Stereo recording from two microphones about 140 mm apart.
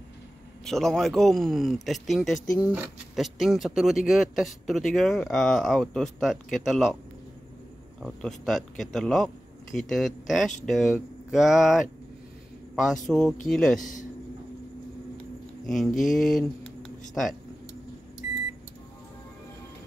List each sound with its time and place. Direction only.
0.7 s speech: 5° left (ahead or behind)
2.4 s speech: 25° left (ahead or behind)
2.7 s speech: centre (ahead or behind)
8.0 s a man's voice: centre (ahead or behind)
13.7 s speech: 65° left (ahead or behind)
15.6 s speech: centre (ahead or behind)